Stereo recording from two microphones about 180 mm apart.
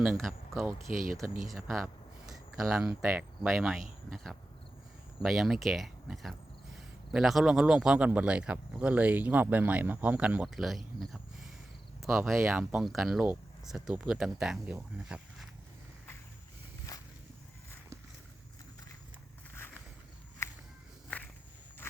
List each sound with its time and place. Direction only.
0.0 s a man's voice: centre (ahead or behind)
16.9 s walk: 20° left (ahead or behind)
19.5 s a sound: 10° left (ahead or behind)